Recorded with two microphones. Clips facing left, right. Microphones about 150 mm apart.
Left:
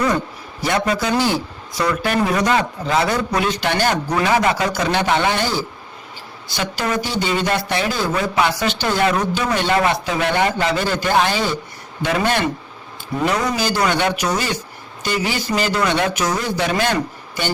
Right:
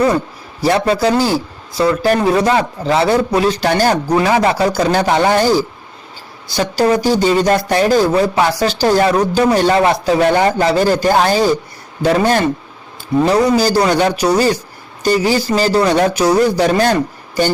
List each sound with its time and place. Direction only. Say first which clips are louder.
0.6 s a man's voice: right 6 dB; 35° right (ahead or behind)